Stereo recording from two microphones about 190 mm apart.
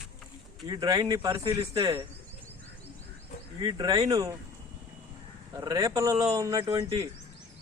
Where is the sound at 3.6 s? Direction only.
20° right (ahead or behind).